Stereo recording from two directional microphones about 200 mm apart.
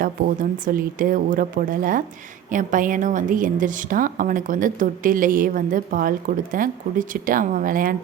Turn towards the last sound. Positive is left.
turn(degrees=-45)  # may be behind; listen again after turning